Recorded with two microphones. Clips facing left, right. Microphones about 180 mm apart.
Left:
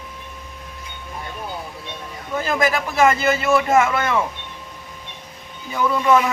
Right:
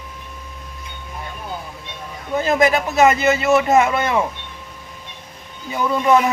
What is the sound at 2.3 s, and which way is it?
A man's voice, 20° right (ahead or behind).